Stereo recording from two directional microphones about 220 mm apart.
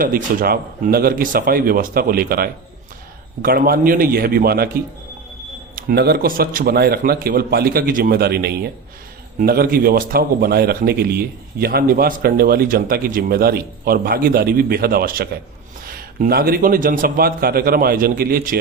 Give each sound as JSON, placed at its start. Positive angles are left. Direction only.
{"t": 0.0, "sound": "a man's voice", "side_deg": -40}
{"t": 5.7, "sound": "a man's voice", "side_deg": -45}